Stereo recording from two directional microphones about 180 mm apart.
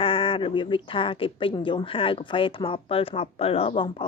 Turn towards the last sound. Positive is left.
turn(degrees=30)  # may be behind; listen again after turning